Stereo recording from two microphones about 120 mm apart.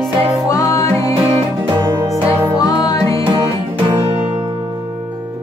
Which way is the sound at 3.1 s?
45° right (ahead or behind).